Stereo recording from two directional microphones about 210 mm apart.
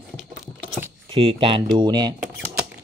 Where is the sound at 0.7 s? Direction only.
10° right (ahead or behind).